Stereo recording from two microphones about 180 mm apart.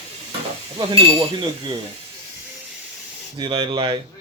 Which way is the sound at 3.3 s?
25° right (ahead or behind).